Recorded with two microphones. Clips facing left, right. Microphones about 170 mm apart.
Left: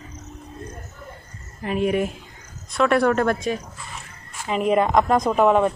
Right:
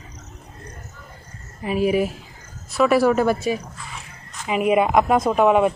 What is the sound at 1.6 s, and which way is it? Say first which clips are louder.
A woman's voice: right 2 dB; 5° right (ahead or behind).